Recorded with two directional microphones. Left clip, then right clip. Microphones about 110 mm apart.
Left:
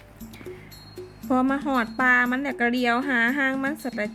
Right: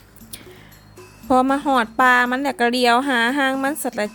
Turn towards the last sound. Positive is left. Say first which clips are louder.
# right 6 dB
turn(degrees=-45)  # may be behind; listen again after turning